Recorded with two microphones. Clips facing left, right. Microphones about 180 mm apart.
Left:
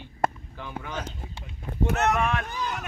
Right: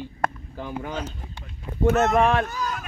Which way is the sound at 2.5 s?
20° left (ahead or behind).